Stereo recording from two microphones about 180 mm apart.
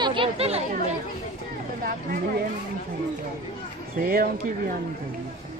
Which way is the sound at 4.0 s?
55° right (ahead or behind).